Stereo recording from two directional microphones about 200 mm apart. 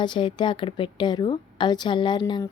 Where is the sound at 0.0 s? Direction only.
25° left (ahead or behind).